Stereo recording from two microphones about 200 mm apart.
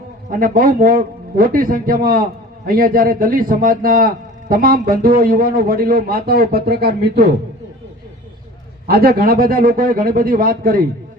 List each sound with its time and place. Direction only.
0.3 s a man's voice: 45° right (ahead or behind)
8.9 s a man's voice: 50° right (ahead or behind)